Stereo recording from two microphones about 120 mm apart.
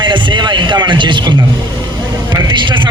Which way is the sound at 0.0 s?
40° right (ahead or behind).